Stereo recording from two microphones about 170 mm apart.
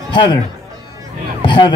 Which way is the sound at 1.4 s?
30° left (ahead or behind).